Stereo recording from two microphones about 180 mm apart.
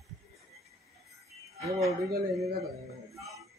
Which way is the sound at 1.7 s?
15° right (ahead or behind).